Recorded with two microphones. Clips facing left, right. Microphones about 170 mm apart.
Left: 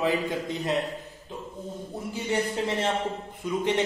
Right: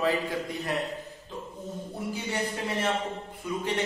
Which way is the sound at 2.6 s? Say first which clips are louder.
Left 2 dB; 30° left (ahead or behind).